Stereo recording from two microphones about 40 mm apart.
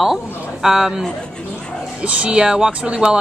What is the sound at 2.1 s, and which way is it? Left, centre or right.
Speech, right.